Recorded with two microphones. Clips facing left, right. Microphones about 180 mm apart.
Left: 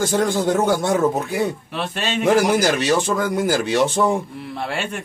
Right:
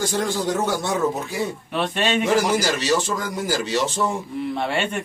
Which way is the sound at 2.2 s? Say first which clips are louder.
Left 7 dB; 55° left (ahead or behind).